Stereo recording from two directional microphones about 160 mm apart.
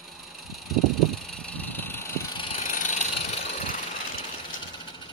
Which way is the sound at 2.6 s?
55° left (ahead or behind).